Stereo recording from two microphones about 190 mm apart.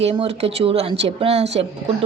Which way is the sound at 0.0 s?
30° right (ahead or behind).